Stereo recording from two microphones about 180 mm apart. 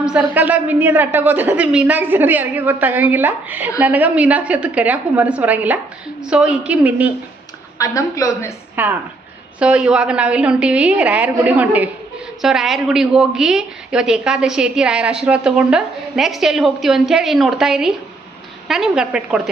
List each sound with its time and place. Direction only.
0.0 s a woman's voice: 5° right (ahead or behind)
7.8 s a woman's voice: 20° left (ahead or behind)
8.8 s a woman's voice: 10° right (ahead or behind)